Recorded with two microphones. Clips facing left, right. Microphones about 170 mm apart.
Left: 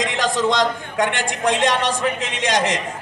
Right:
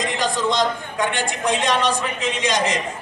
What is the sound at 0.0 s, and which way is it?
A man's voice, 90° left.